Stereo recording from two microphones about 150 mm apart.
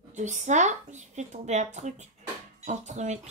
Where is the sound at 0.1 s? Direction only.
50° right (ahead or behind).